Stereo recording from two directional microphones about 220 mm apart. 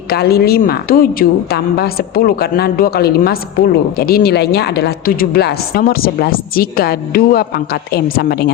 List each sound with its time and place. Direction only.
0.1 s a woman's voice: 45° left (ahead or behind)